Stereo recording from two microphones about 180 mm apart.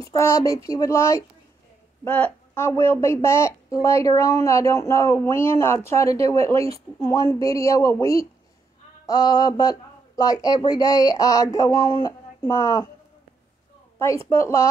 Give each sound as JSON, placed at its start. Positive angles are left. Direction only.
{"t": 0.0, "sound": "a woman's voice", "side_deg": 15}
{"t": 13.9, "sound": "a woman's voice", "side_deg": 15}